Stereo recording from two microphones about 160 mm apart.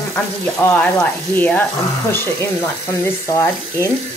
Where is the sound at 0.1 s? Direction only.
10° left (ahead or behind).